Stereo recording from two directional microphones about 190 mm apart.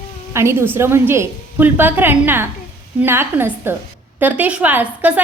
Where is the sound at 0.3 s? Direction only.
10° right (ahead or behind).